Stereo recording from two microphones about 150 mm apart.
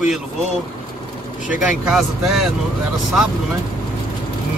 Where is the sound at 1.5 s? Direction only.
Centre (ahead or behind).